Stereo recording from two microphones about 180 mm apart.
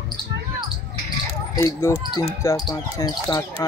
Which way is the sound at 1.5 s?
15° left (ahead or behind).